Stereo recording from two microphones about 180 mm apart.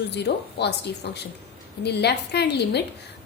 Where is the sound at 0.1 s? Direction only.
70° left (ahead or behind).